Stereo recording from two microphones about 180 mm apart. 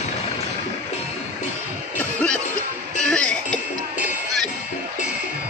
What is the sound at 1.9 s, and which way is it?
Music, 5° left (ahead or behind).